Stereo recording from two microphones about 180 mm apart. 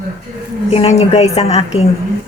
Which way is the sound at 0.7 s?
35° left (ahead or behind).